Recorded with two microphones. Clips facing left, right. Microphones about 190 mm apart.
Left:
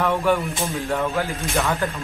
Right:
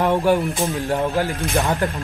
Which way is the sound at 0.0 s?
30° right (ahead or behind).